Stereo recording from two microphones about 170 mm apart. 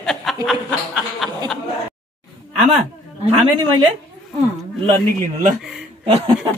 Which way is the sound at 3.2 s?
30° right (ahead or behind).